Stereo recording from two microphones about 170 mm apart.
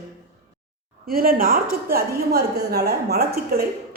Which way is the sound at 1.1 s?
60° right (ahead or behind).